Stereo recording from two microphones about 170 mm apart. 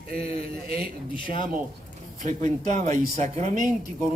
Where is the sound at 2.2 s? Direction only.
45° right (ahead or behind).